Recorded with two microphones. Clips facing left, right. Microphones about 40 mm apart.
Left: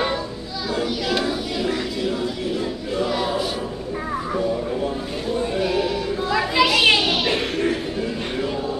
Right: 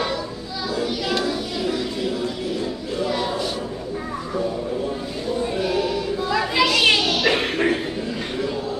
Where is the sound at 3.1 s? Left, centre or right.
Centre.